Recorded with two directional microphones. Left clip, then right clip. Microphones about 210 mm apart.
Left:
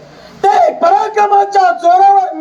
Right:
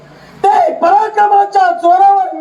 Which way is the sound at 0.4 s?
35° left (ahead or behind).